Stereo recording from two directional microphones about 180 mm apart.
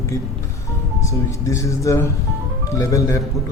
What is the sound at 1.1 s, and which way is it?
Speech, 15° left (ahead or behind).